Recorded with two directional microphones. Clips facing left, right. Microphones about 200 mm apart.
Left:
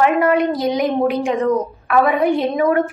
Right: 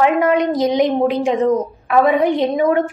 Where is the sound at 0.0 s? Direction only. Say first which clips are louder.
Even; 20° right (ahead or behind).